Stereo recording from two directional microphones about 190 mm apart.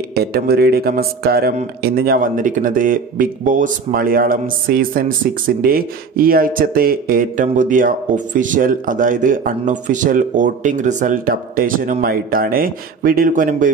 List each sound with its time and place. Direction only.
0.1 s speech: 55° right (ahead or behind)